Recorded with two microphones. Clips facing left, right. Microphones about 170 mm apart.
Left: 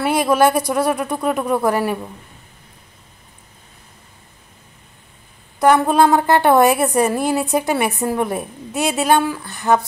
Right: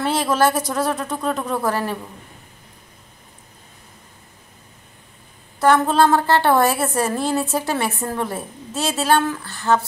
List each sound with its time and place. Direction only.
0.0 s a woman's voice: 10° left (ahead or behind)
5.6 s a woman's voice: 15° left (ahead or behind)